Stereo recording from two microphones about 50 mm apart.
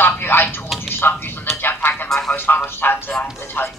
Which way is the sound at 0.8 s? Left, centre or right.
Left.